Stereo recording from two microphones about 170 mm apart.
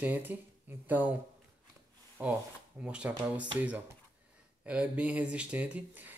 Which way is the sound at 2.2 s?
10° right (ahead or behind).